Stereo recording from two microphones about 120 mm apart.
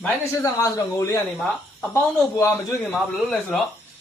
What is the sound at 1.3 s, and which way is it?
Speech, 5° left (ahead or behind).